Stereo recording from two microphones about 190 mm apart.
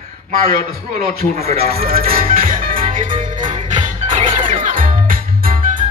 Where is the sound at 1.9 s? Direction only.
50° right (ahead or behind).